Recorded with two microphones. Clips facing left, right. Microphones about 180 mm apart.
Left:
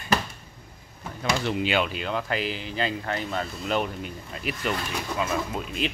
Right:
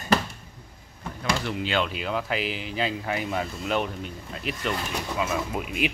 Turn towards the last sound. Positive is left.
turn(degrees=-10)  # may be behind; listen again after turning